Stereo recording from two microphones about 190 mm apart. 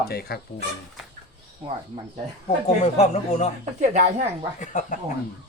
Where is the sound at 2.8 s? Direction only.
35° left (ahead or behind).